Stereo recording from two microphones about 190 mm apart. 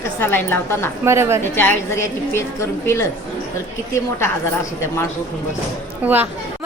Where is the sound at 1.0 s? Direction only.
15° right (ahead or behind).